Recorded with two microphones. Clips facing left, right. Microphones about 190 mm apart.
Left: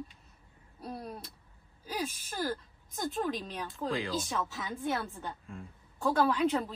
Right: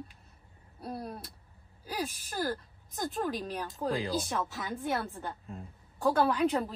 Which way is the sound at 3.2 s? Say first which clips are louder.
Right 1 dB; 5° right (ahead or behind).